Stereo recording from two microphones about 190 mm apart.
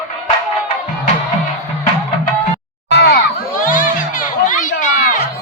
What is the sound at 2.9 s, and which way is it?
Crowd, 60° left (ahead or behind).